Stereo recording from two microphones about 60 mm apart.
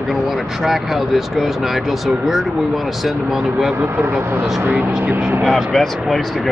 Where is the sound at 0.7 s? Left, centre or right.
Centre.